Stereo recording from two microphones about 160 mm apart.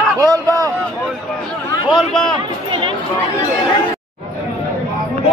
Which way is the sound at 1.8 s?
Centre (ahead or behind).